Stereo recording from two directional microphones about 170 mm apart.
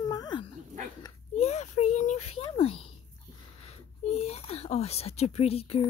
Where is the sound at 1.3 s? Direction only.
40° left (ahead or behind).